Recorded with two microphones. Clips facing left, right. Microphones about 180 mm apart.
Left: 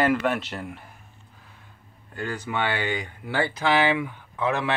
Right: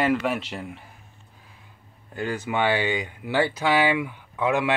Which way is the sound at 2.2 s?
15° right (ahead or behind).